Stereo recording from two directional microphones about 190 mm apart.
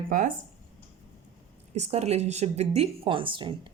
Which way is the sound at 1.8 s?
35° right (ahead or behind).